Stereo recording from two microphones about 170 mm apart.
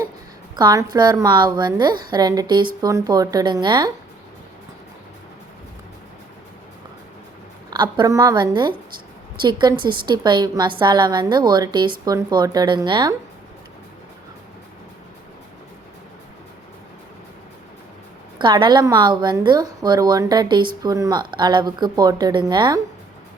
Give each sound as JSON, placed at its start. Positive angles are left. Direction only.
{"t": 0.5, "sound": "a woman's voice", "side_deg": -25}
{"t": 7.7, "sound": "a woman's voice", "side_deg": -25}
{"t": 18.3, "sound": "a woman's voice", "side_deg": -25}